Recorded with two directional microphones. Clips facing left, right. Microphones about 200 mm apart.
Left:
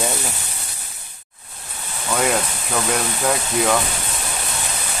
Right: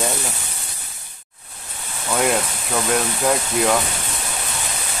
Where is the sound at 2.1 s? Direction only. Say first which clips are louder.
Right 1 dB; centre (ahead or behind).